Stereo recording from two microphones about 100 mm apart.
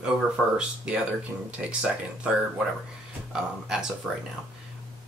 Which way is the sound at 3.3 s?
5° right (ahead or behind).